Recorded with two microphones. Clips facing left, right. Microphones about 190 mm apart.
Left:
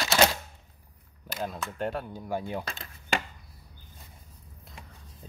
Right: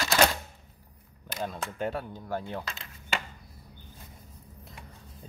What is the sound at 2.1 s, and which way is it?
Speech, 10° left (ahead or behind).